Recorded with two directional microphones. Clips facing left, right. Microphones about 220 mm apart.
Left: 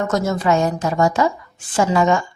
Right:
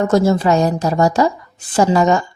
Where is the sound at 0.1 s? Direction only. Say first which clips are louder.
Right 4 dB; 30° right (ahead or behind).